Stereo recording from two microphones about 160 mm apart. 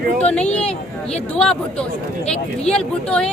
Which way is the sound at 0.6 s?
40° left (ahead or behind).